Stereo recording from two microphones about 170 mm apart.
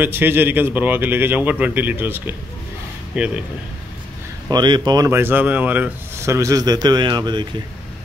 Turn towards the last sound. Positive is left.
turn(degrees=-25)  # may be behind; listen again after turning